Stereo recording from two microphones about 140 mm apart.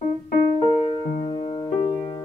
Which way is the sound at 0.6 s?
40° left (ahead or behind).